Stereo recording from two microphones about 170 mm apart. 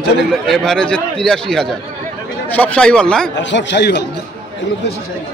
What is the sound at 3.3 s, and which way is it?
Speech, 90° left.